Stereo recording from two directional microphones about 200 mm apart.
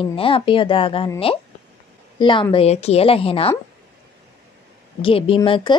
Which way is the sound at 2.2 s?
25° left (ahead or behind).